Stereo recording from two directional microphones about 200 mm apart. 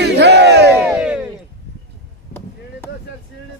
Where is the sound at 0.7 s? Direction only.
5° right (ahead or behind).